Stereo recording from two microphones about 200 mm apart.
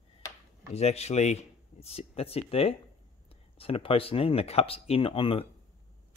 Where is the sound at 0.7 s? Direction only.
30° left (ahead or behind).